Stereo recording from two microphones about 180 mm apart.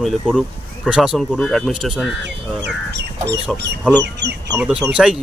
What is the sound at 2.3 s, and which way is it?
Speech, 70° right (ahead or behind).